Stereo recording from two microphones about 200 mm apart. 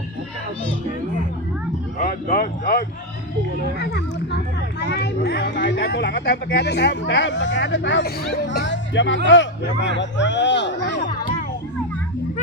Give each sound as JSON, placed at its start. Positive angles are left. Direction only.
{"t": 2.0, "sound": "speech", "side_deg": 45}
{"t": 3.8, "sound": "speech", "side_deg": 55}